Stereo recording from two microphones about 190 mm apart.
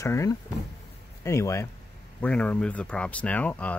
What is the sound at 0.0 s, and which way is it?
Speech, 15° left (ahead or behind).